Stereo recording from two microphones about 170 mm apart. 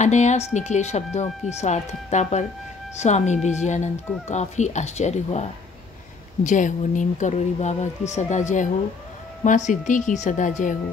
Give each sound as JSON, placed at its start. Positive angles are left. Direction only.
{"t": 0.0, "sound": "a woman's voice", "side_deg": 45}